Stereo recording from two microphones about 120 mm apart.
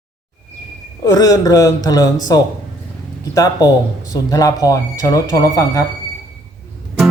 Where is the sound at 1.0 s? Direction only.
30° left (ahead or behind).